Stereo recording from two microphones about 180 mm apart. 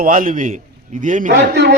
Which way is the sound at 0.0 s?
50° right (ahead or behind).